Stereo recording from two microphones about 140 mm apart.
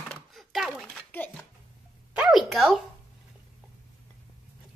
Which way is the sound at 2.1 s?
5° right (ahead or behind).